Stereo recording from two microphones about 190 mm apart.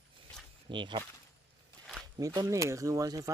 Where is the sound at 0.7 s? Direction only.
25° right (ahead or behind).